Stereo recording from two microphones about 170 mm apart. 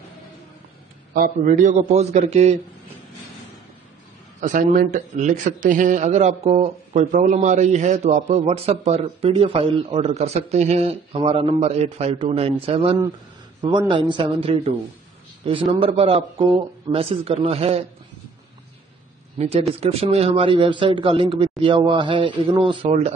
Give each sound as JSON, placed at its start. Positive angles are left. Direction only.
{"t": 1.1, "sound": "a man's voice", "side_deg": -55}
{"t": 4.4, "sound": "a man's voice", "side_deg": -50}
{"t": 19.3, "sound": "a man's voice", "side_deg": -35}